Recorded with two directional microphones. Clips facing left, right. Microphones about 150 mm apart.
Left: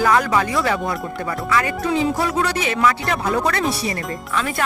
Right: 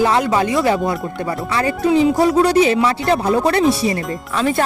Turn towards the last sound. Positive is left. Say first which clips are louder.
# right 5 dB
turn(degrees=-30)  # may be behind; listen again after turning